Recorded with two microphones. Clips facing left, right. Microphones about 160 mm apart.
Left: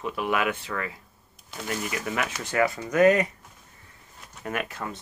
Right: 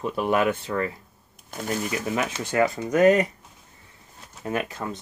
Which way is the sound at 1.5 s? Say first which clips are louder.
Right 3 dB; 45° right (ahead or behind).